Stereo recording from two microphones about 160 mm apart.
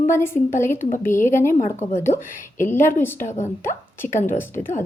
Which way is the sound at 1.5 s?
50° left (ahead or behind).